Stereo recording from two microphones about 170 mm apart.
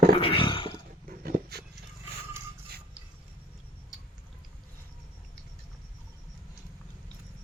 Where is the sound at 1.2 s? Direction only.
60° right (ahead or behind).